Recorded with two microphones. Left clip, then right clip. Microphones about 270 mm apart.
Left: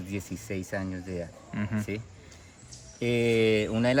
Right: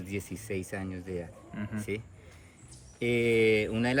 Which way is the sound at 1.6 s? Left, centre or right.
Left.